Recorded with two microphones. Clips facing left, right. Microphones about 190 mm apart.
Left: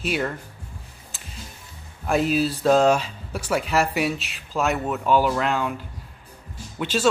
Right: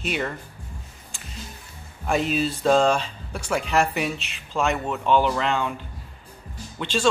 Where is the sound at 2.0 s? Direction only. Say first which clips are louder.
Left 2 dB; centre (ahead or behind).